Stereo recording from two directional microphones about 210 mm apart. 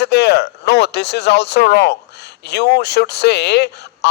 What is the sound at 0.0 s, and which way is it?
Speech, 50° left (ahead or behind).